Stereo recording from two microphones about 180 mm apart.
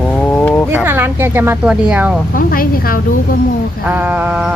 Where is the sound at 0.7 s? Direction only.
10° right (ahead or behind).